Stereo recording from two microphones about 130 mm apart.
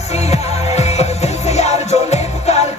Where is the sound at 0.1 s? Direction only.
55° left (ahead or behind).